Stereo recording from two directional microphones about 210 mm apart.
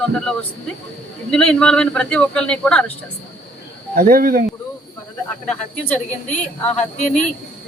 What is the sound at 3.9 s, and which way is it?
Speech, 45° right (ahead or behind).